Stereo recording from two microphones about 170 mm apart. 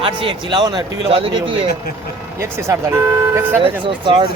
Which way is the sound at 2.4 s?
15° right (ahead or behind).